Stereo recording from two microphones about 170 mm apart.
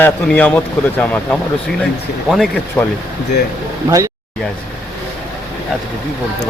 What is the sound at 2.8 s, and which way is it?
Speech, 10° left (ahead or behind).